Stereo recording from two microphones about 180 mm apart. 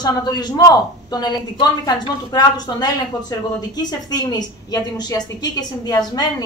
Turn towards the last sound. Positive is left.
turn(degrees=20)  # may be behind; listen again after turning